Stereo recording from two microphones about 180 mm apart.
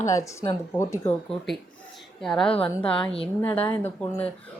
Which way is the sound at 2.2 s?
5° left (ahead or behind).